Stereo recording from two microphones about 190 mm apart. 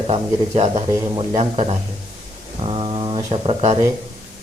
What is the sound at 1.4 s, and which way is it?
A man's voice, 35° right (ahead or behind).